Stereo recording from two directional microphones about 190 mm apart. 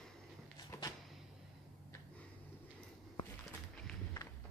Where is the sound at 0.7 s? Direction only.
20° left (ahead or behind).